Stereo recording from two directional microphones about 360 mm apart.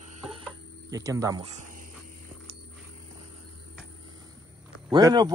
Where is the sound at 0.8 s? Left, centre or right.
Centre.